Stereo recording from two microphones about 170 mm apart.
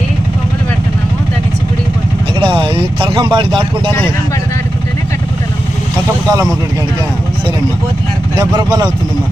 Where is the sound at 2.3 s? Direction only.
30° right (ahead or behind).